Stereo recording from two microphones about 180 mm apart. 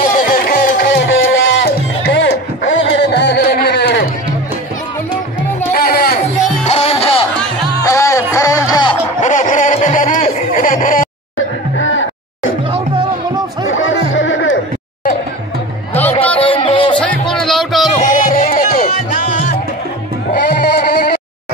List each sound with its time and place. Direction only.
0.1 s music: 50° left (ahead or behind); by 4.0 s 70° left (ahead or behind)
5.8 s music: 60° left (ahead or behind)
6.7 s music: 35° left (ahead or behind)
7.8 s music: 15° left (ahead or behind)
9.2 s a sound: 45° left (ahead or behind)
11.7 s music: 90° left
13.7 s a sound: 90° left
16.3 s music: 30° left (ahead or behind)
17.0 s music: 5° left (ahead or behind)
18.0 s music: 50° left (ahead or behind)
20.3 s sheep: 65° left (ahead or behind)